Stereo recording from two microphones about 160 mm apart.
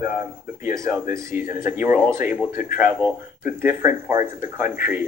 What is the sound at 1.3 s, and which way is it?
Speech, 10° right (ahead or behind).